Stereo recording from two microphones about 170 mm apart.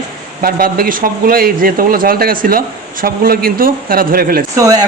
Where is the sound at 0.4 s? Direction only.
60° right (ahead or behind).